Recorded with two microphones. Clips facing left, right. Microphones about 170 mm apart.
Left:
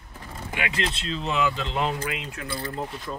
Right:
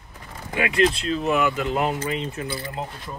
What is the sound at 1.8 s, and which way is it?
Speech, 20° right (ahead or behind).